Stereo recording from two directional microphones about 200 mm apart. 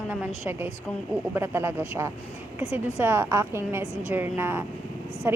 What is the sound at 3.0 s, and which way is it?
Speech, 10° right (ahead or behind).